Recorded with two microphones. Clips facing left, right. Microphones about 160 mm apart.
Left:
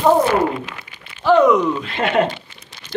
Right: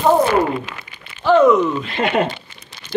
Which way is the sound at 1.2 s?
15° left (ahead or behind).